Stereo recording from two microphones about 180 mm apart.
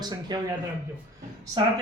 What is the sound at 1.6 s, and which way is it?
Speech, 25° right (ahead or behind).